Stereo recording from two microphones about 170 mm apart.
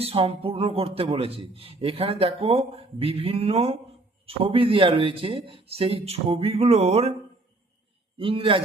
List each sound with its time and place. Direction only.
0.0 s a man's voice: 35° right (ahead or behind)
8.2 s a man's voice: 30° right (ahead or behind)